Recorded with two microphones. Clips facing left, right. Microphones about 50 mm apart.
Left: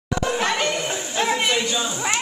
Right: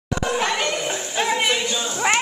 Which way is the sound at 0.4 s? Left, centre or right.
Centre.